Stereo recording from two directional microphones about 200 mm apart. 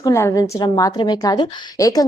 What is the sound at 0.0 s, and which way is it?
A woman's voice, 15° left (ahead or behind).